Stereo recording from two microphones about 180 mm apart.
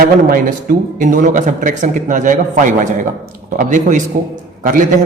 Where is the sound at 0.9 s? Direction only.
45° right (ahead or behind).